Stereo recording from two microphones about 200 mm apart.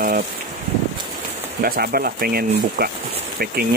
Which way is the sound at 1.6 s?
50° right (ahead or behind).